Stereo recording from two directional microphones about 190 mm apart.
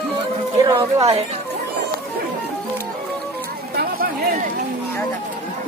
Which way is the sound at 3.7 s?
50° right (ahead or behind).